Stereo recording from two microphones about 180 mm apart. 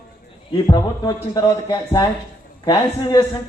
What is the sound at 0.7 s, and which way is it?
Speech, 20° left (ahead or behind).